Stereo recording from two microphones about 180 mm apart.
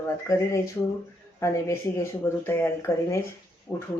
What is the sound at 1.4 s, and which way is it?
Speech, 15° left (ahead or behind).